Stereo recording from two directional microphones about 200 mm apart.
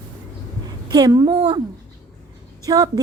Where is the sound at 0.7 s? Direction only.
20° right (ahead or behind).